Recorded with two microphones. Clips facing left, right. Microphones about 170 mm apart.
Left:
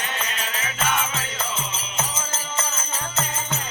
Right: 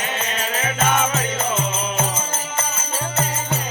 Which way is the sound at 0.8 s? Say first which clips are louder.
Right 5 dB; 45° right (ahead or behind).